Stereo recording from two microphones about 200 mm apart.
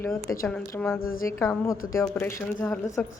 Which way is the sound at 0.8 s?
10° left (ahead or behind).